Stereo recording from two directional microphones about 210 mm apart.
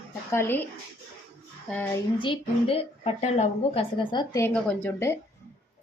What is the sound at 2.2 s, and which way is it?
A woman's voice, 25° left (ahead or behind).